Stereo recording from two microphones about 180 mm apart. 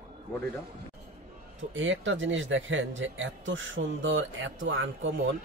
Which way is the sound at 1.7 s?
90° right.